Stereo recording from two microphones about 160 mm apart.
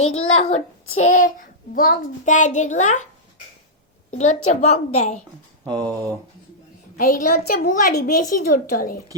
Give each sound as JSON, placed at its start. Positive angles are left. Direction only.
{"t": 0.1, "sound": "a child's voice", "side_deg": 40}
{"t": 4.1, "sound": "a child's voice", "side_deg": 45}
{"t": 5.6, "sound": "speech", "side_deg": -25}
{"t": 6.9, "sound": "a woman's voice", "side_deg": 55}